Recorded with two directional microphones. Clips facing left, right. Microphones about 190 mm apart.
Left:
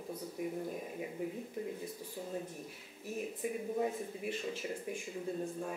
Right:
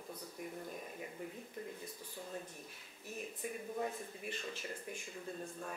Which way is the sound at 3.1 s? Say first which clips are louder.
Left 6 dB; 5° left (ahead or behind).